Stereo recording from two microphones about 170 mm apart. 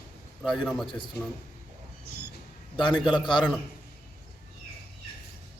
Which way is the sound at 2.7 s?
30° left (ahead or behind).